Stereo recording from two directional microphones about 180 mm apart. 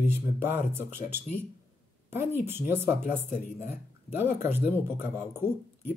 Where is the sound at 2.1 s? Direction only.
10° right (ahead or behind).